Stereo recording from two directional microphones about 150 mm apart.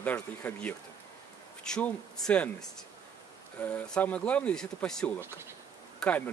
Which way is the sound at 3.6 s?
5° left (ahead or behind).